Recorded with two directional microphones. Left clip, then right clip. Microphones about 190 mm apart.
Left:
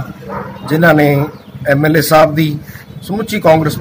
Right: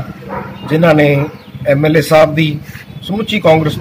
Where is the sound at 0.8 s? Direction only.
5° right (ahead or behind).